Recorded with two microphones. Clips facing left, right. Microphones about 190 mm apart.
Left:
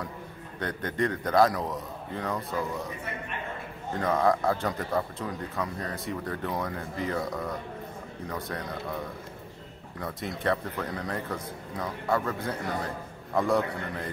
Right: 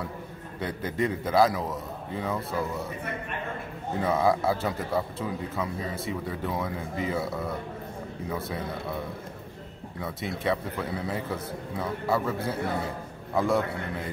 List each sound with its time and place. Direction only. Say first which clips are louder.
0.6 s a man's voice: right 1 dB; 5° right (ahead or behind)
4.0 s a man's voice: even; 5° right (ahead or behind)
9.9 s a man's voice: right 1 dB; centre (ahead or behind)